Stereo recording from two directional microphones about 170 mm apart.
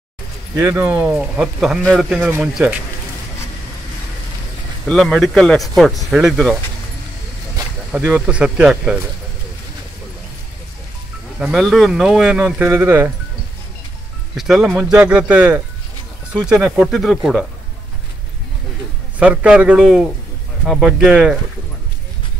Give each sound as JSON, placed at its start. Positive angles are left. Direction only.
{"t": 0.6, "sound": "speech", "side_deg": -10}
{"t": 4.8, "sound": "speech", "side_deg": 5}
{"t": 7.9, "sound": "speech", "side_deg": -5}
{"t": 11.3, "sound": "speech", "side_deg": 0}
{"t": 14.3, "sound": "speech", "side_deg": 0}
{"t": 19.1, "sound": "speech", "side_deg": -5}